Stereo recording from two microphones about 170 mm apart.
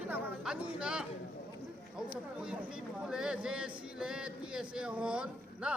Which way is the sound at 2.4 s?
5° right (ahead or behind).